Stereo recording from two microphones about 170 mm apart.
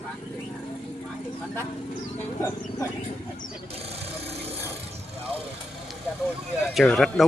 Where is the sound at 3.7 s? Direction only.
35° right (ahead or behind).